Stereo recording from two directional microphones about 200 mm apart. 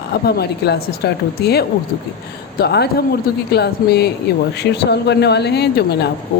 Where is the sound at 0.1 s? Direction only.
55° left (ahead or behind).